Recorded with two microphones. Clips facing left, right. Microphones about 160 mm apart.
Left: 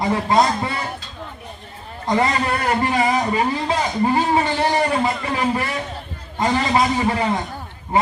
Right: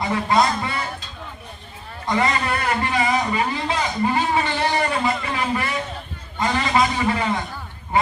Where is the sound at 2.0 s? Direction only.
35° left (ahead or behind).